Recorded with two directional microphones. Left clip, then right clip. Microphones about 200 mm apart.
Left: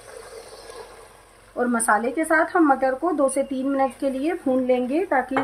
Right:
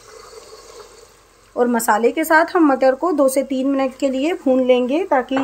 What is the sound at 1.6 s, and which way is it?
Speech, 35° right (ahead or behind).